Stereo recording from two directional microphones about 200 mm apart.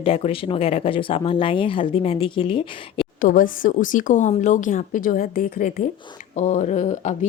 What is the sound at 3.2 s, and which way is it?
A woman's voice, 45° left (ahead or behind).